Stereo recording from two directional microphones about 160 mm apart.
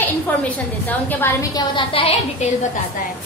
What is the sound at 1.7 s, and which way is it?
Speech, 40° left (ahead or behind).